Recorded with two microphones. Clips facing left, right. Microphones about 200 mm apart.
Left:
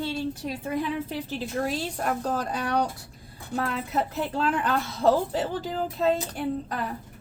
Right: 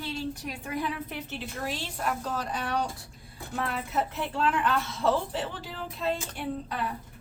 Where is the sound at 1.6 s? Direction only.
40° left (ahead or behind).